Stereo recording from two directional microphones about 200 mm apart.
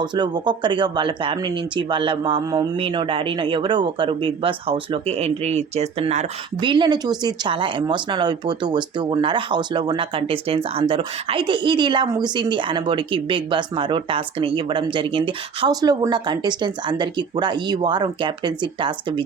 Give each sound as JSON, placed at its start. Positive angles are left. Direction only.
{"t": 0.0, "sound": "speech", "side_deg": -20}
{"t": 6.6, "sound": "speech", "side_deg": -25}